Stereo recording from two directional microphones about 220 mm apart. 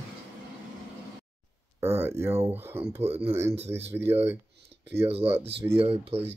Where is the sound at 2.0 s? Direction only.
10° right (ahead or behind).